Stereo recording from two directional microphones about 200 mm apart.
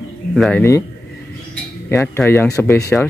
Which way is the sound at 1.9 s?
10° left (ahead or behind).